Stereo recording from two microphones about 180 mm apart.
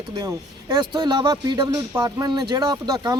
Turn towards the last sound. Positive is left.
turn(degrees=-20)  # may be behind; listen again after turning